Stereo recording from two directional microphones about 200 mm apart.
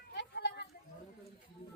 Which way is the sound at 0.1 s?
55° left (ahead or behind).